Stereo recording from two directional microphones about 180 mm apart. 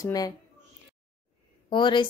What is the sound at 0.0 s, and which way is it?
Speech, 20° left (ahead or behind).